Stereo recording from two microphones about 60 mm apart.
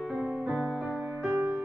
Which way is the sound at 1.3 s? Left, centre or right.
Right.